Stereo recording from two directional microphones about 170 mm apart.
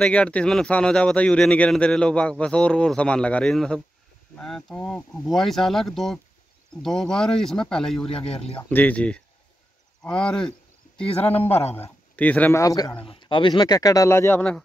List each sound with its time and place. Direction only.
0.0 s speech: 5° left (ahead or behind)
11.1 s speech: 35° left (ahead or behind)
11.3 s speech: 10° left (ahead or behind)